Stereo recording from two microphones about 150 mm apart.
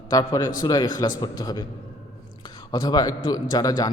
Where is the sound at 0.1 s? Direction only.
30° left (ahead or behind).